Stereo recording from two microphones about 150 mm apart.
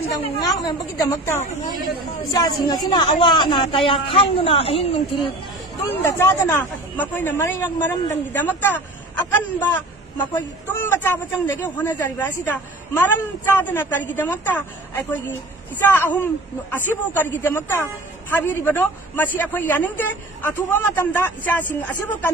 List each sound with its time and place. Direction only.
0.5 s a woman's voice: 25° left (ahead or behind)
6.0 s a man's voice: 15° left (ahead or behind)